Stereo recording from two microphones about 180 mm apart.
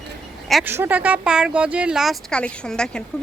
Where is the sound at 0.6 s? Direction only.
10° right (ahead or behind).